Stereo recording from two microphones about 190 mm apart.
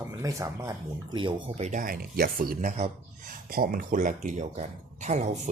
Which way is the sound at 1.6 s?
45° right (ahead or behind).